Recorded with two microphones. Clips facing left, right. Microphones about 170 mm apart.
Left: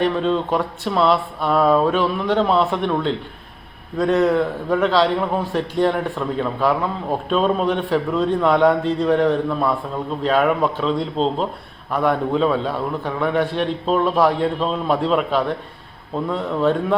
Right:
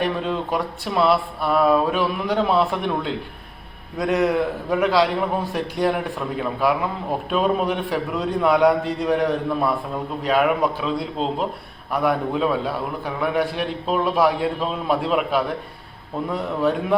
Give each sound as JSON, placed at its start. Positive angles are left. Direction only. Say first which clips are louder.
{"t": 0.0, "sound": "a man's voice", "louder": "left 4 dB", "side_deg": -10}